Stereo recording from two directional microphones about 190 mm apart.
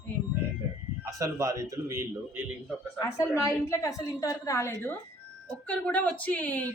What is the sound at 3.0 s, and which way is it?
A woman's voice, 15° left (ahead or behind).